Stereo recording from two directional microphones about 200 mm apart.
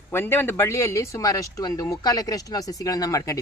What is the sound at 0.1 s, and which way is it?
Speech, 10° left (ahead or behind).